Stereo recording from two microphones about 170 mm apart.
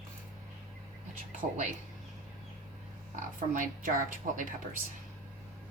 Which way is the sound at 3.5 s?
50° right (ahead or behind).